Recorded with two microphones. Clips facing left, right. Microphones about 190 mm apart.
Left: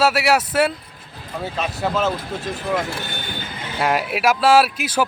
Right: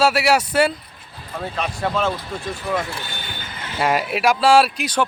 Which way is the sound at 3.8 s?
Centre (ahead or behind).